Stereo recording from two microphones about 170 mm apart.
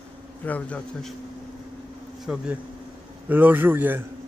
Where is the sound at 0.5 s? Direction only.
10° left (ahead or behind).